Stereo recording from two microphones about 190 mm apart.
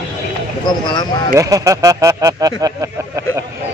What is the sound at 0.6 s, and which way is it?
Speech, 25° left (ahead or behind).